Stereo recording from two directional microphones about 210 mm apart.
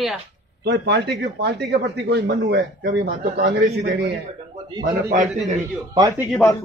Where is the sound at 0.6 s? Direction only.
55° right (ahead or behind).